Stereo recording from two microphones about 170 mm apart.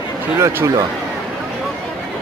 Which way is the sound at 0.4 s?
15° right (ahead or behind).